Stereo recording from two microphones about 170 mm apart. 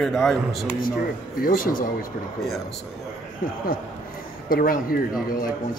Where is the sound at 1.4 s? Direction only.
60° left (ahead or behind).